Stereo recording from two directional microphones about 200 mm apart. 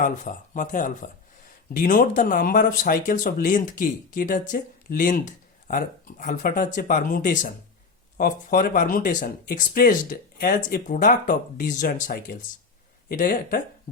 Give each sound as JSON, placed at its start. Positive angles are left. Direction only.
{"t": 0.0, "sound": "speech", "side_deg": 40}